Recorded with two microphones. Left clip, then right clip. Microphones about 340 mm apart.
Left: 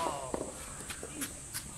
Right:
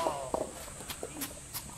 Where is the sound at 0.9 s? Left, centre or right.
Centre.